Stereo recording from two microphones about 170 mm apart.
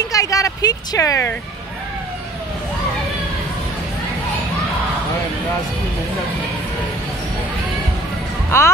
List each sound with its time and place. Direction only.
0.1 s speech: 20° left (ahead or behind)
8.5 s speech: 15° left (ahead or behind)